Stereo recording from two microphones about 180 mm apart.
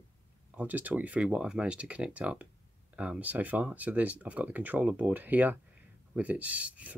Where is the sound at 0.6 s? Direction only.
10° right (ahead or behind).